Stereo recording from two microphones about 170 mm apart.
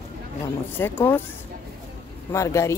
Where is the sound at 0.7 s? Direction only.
10° left (ahead or behind).